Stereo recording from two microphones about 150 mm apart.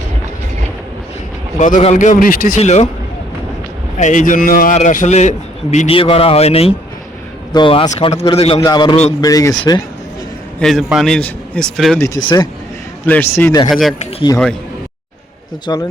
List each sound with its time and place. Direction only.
1.5 s a man's voice: 55° left (ahead or behind)
2.6 s speech: 50° left (ahead or behind)
3.9 s a man's voice: 55° left (ahead or behind)
5.9 s speech: 40° left (ahead or behind)
8.6 s speech: 30° left (ahead or behind)
10.6 s a man's voice: centre (ahead or behind)
11.9 s a man's voice: 20° left (ahead or behind)
13.7 s a man's voice: centre (ahead or behind)
14.3 s speech: 25° left (ahead or behind)
15.7 s speech: 25° left (ahead or behind)